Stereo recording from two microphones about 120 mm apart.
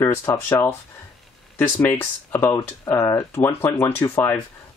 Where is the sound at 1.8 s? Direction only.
20° left (ahead or behind).